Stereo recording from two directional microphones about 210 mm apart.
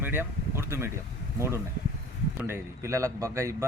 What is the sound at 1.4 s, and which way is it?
Speech, 15° right (ahead or behind).